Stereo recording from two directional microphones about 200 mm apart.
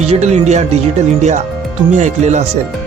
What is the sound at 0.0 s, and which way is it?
Speech, 35° right (ahead or behind).